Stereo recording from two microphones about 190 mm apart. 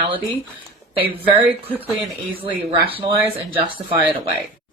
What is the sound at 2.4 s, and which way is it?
Speech, 30° right (ahead or behind).